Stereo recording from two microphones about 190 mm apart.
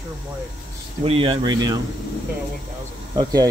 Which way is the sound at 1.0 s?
30° right (ahead or behind).